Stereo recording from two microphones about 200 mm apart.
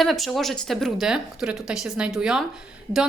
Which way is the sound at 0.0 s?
Centre (ahead or behind).